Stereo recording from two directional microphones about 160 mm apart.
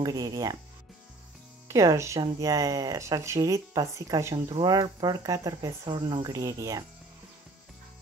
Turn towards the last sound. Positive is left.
turn(degrees=-20)  # may be behind; listen again after turning